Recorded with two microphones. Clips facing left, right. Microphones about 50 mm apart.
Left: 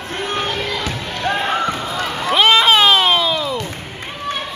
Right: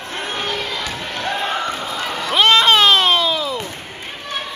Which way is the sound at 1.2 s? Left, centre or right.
Centre.